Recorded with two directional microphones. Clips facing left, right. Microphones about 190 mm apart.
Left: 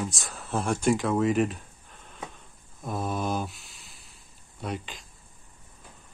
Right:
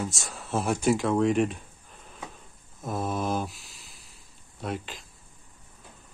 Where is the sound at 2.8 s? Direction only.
Centre (ahead or behind).